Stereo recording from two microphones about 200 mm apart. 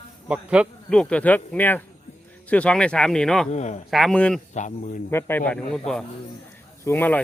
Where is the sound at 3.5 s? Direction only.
35° left (ahead or behind).